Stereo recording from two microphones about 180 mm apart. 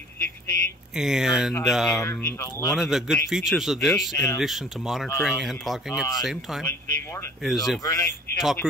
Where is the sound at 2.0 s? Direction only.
15° left (ahead or behind).